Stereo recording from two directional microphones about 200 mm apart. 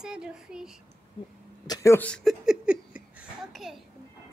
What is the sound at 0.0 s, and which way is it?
Speech, 5° right (ahead or behind).